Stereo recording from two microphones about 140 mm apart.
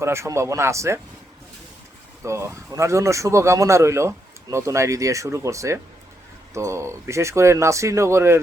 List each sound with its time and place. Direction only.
0.0 s speech: 20° right (ahead or behind)
2.2 s speech: 20° right (ahead or behind)